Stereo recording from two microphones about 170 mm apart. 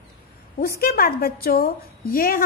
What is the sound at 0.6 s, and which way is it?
A woman's voice, 60° left (ahead or behind).